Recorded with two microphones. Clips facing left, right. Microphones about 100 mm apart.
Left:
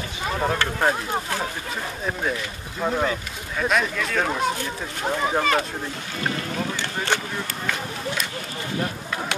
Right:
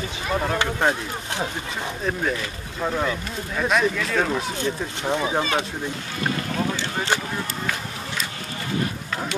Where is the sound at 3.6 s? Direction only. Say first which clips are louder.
Right 1 dB; centre (ahead or behind).